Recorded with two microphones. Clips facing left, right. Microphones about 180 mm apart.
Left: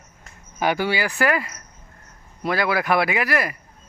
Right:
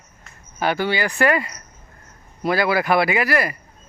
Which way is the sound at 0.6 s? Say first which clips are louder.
Right 1 dB; 10° left (ahead or behind).